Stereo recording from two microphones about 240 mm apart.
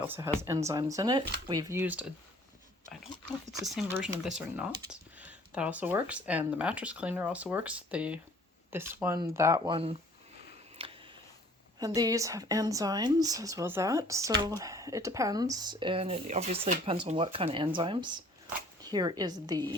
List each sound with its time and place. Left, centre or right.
0.0 s speech: centre
3.5 s speech: centre; by 10.0 s right
10.8 s a sound: right
11.9 s speech: centre